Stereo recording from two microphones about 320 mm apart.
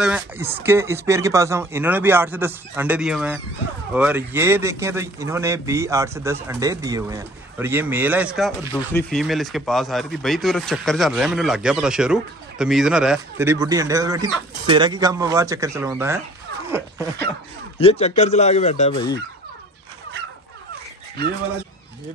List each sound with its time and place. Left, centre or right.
0.0 s a man's voice: centre
17.7 s speech: centre